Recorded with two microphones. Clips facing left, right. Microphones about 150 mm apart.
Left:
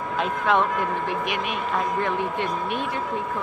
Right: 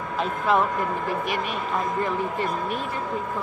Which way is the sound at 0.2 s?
5° right (ahead or behind).